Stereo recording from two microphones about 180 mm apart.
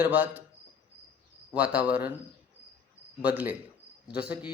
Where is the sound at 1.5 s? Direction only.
10° right (ahead or behind).